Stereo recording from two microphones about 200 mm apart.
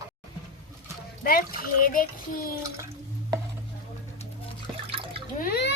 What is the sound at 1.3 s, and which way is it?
A child's voice, 45° left (ahead or behind).